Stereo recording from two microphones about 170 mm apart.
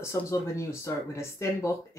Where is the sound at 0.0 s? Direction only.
15° left (ahead or behind).